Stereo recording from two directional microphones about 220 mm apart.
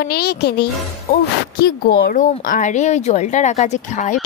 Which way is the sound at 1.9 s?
40° left (ahead or behind).